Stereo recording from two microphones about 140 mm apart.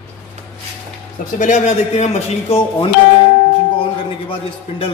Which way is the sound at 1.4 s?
55° left (ahead or behind).